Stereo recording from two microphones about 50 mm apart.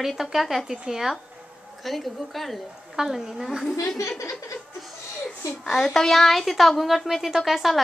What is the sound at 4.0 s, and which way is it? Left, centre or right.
Speech, left.